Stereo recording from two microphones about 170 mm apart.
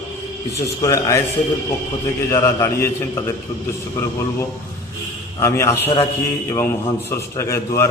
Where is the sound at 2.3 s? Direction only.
15° left (ahead or behind).